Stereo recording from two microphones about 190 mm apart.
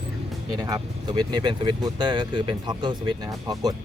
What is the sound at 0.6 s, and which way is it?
Speech, 20° right (ahead or behind).